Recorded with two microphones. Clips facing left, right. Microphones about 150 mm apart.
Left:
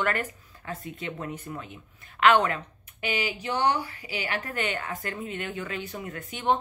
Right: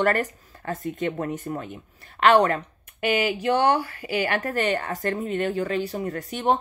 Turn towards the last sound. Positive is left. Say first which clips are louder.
# right 4 dB
turn(degrees=-40)  # may be behind; listen again after turning